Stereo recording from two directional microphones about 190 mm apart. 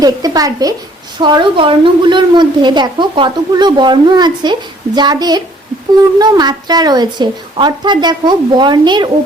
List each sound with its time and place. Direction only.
0.0 s a woman's voice: 20° right (ahead or behind)